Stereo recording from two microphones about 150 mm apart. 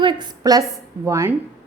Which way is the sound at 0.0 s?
30° right (ahead or behind).